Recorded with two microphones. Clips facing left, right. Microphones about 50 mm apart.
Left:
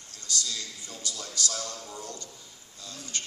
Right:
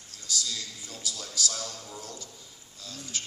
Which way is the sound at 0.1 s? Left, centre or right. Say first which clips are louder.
Even; centre.